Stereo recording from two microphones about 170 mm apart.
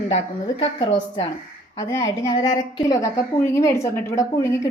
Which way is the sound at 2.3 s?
25° left (ahead or behind).